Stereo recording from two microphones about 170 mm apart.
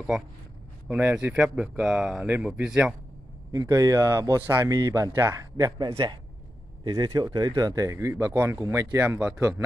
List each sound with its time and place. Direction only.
0.8 s speech: 10° right (ahead or behind)
3.5 s speech: 20° right (ahead or behind)
5.8 s a man's voice: 30° right (ahead or behind); by 9.6 s 10° right (ahead or behind)